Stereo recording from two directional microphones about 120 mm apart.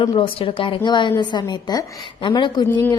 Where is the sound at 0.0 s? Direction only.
45° left (ahead or behind).